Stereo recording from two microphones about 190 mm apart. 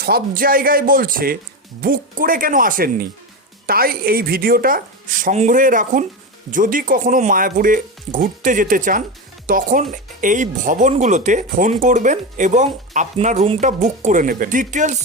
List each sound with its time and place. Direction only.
0.0 s speech: 50° right (ahead or behind)